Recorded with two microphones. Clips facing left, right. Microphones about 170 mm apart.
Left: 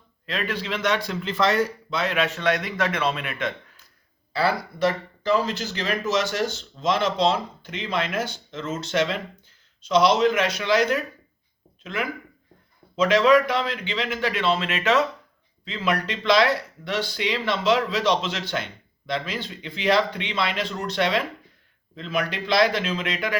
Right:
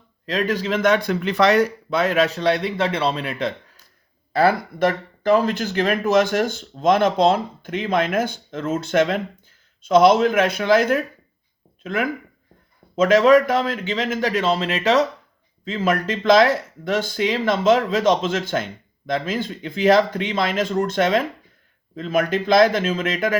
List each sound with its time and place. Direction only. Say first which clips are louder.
0.3 s speech: right 7 dB; 40° right (ahead or behind)
4.3 s speech: right 6 dB; 50° right (ahead or behind)